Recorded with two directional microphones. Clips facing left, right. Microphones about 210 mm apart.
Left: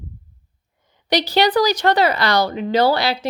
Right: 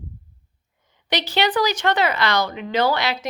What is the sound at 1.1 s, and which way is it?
A woman's voice, 35° left (ahead or behind).